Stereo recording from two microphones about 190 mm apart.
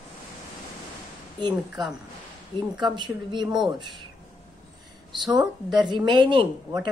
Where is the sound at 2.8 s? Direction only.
25° right (ahead or behind).